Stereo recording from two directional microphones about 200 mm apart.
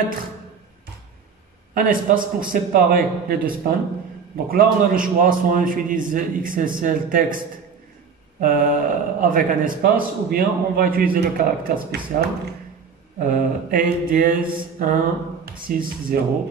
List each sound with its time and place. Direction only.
1.7 s a man's voice: 45° right (ahead or behind)
8.4 s a man's voice: 45° right (ahead or behind)